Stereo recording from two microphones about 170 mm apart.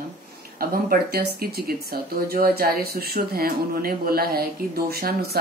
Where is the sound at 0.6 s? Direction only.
60° right (ahead or behind).